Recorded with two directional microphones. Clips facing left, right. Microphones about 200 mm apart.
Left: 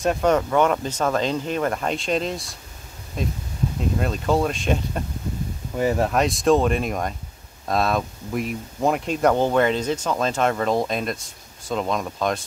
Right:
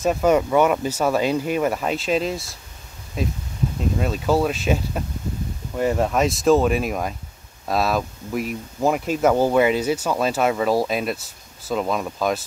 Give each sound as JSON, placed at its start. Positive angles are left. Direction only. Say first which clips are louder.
{"t": 0.0, "sound": "speech", "louder": "right 2 dB", "side_deg": -5}